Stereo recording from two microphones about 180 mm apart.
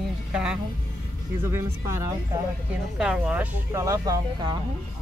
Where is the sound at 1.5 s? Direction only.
15° right (ahead or behind).